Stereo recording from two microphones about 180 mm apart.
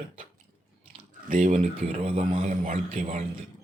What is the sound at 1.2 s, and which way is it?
Speech, 45° right (ahead or behind).